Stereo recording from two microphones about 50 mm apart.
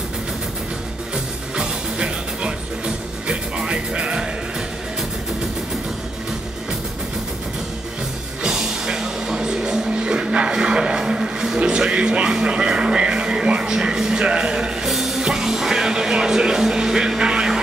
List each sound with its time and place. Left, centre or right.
1.1 s music: centre
8.4 s music: centre
14.9 s music: centre